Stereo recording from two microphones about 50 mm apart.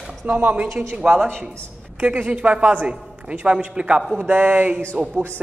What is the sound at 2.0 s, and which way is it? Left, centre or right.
A man's voice, right.